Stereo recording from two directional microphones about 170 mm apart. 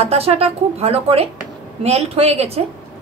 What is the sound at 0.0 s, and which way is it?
A woman's voice, 35° right (ahead or behind).